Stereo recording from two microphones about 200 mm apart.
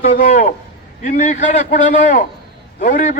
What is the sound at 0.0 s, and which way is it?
A man's voice, 35° left (ahead or behind).